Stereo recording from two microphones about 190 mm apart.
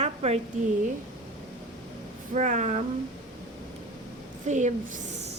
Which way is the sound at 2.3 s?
40° right (ahead or behind).